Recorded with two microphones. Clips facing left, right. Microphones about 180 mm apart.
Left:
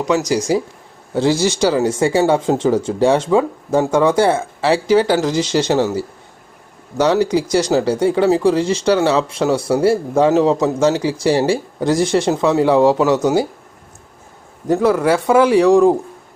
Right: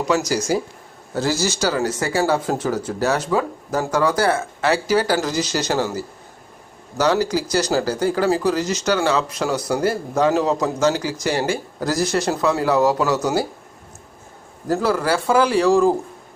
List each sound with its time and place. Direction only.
0.2 s speech: centre (ahead or behind)
1.1 s speech: 25° left (ahead or behind)
14.8 s speech: centre (ahead or behind)
15.7 s a man's voice: 15° left (ahead or behind)